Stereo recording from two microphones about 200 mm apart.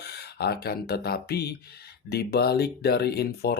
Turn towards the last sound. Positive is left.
turn(degrees=55)  # may be behind; listen again after turning